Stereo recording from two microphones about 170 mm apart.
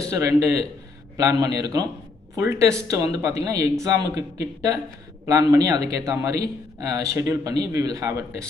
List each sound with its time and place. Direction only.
0.1 s a man's voice: 20° right (ahead or behind)